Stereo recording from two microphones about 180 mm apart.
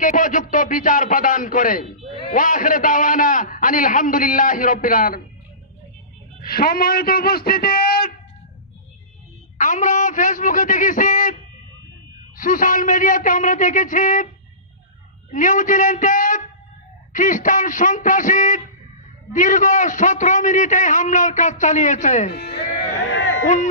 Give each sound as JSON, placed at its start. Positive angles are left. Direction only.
{"t": 0.0, "sound": "a man's voice", "side_deg": 45}
{"t": 6.4, "sound": "a man's voice", "side_deg": 55}
{"t": 9.6, "sound": "a man's voice", "side_deg": 45}
{"t": 12.4, "sound": "a man's voice", "side_deg": 50}
{"t": 15.3, "sound": "a man's voice", "side_deg": 45}
{"t": 23.0, "sound": "a sound", "side_deg": 90}
{"t": 23.4, "sound": "a man's voice", "side_deg": 40}